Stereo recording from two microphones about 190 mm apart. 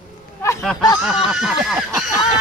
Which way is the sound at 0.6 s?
Centre (ahead or behind).